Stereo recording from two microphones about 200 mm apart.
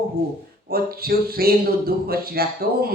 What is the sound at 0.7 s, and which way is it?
Speech, 50° right (ahead or behind).